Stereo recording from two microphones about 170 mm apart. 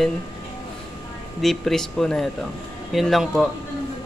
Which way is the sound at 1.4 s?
Centre (ahead or behind).